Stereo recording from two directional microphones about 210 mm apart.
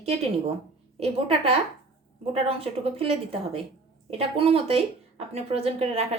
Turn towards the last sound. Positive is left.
turn(degrees=-30)  # may be behind; listen again after turning